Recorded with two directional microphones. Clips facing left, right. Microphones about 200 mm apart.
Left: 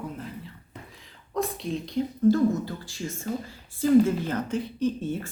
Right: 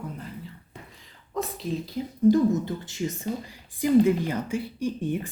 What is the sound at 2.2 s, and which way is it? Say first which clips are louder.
Speech: right 2 dB; 20° right (ahead or behind).